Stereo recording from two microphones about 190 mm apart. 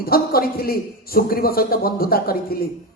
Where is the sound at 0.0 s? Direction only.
50° left (ahead or behind).